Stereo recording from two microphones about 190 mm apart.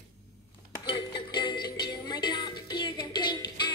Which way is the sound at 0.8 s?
25° left (ahead or behind).